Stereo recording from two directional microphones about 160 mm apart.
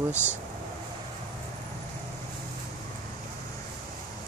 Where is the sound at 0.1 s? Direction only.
15° left (ahead or behind).